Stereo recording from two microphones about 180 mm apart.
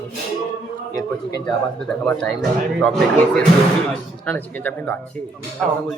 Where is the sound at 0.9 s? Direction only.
20° left (ahead or behind).